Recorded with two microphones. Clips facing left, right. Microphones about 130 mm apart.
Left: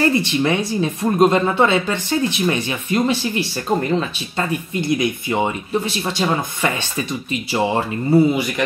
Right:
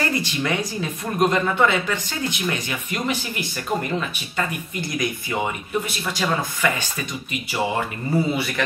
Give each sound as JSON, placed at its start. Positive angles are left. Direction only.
{"t": 0.2, "sound": "a woman's voice", "side_deg": 25}